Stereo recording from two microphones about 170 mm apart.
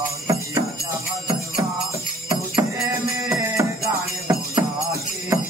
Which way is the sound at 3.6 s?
15° right (ahead or behind).